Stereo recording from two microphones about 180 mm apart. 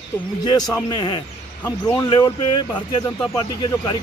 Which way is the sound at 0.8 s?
25° left (ahead or behind).